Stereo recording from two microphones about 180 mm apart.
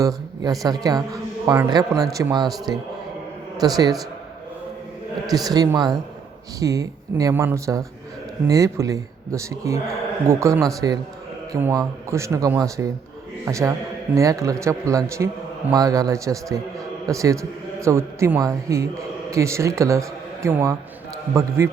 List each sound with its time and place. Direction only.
0.0 s a man's voice: 20° right (ahead or behind)
5.2 s a man's voice: 20° right (ahead or behind)